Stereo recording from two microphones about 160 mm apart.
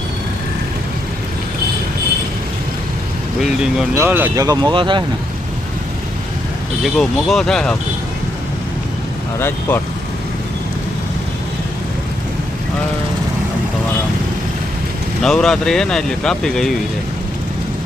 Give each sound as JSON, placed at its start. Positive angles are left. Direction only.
{"t": 3.9, "sound": "speech", "side_deg": -15}
{"t": 4.4, "sound": "speech", "side_deg": -25}
{"t": 6.8, "sound": "speech", "side_deg": 0}
{"t": 9.4, "sound": "speech", "side_deg": 15}
{"t": 15.2, "sound": "speech", "side_deg": 5}